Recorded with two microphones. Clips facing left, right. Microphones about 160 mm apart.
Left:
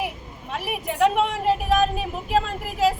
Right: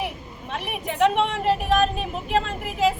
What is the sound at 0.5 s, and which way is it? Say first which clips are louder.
A woman's voice: left 1 dB; 5° left (ahead or behind).